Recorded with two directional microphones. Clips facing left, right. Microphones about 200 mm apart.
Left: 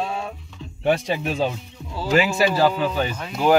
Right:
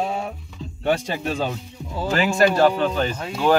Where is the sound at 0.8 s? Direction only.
5° left (ahead or behind).